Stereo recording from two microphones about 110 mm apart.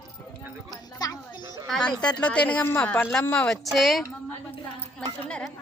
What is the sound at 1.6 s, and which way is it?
Speech, 5° left (ahead or behind).